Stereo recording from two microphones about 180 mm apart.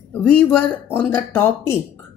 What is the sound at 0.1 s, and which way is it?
Speech, 5° left (ahead or behind).